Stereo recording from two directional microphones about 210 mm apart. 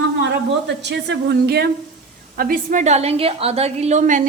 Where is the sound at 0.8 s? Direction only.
55° right (ahead or behind).